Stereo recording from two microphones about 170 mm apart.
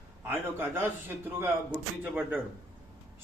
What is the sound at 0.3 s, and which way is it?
A man's voice, 15° right (ahead or behind).